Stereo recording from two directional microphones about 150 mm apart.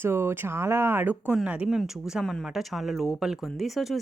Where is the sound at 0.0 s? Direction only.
15° right (ahead or behind).